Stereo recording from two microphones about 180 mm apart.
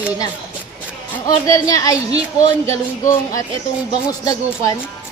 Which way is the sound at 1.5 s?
20° left (ahead or behind).